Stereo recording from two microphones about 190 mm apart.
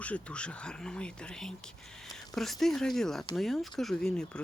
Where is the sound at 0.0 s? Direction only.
5° left (ahead or behind).